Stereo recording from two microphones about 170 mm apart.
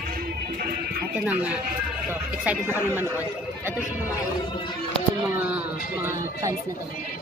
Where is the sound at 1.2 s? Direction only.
5° right (ahead or behind).